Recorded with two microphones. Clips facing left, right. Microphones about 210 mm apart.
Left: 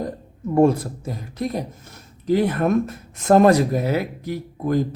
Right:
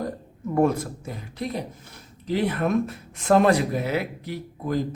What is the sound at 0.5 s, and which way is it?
A man's voice, 30° left (ahead or behind).